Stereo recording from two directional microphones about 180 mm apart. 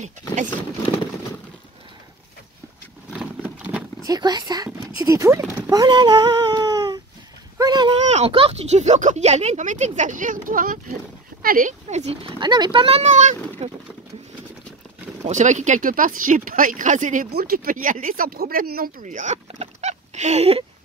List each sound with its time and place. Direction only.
3.1 s a sound: 5° right (ahead or behind)
4.0 s speech: 20° right (ahead or behind)
8.0 s speech: 35° right (ahead or behind)
15.2 s speech: 40° right (ahead or behind)
17.3 s speech: 55° right (ahead or behind); by 20.6 s 35° right (ahead or behind)